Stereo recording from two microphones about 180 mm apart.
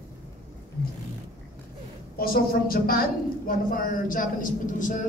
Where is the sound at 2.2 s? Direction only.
55° left (ahead or behind).